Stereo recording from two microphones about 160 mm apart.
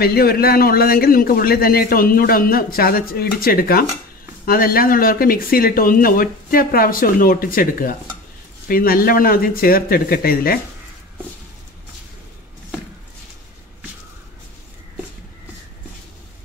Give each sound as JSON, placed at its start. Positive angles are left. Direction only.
{"t": 0.0, "sound": "a man's voice", "side_deg": 70}